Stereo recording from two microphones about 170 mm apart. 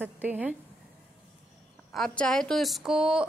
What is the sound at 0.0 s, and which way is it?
Speech, 10° right (ahead or behind).